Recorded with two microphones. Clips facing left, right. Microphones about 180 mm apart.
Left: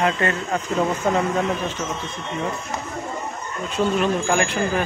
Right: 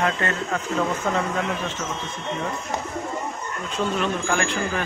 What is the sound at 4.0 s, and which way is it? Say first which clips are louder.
Speech: left 4 dB; 15° left (ahead or behind).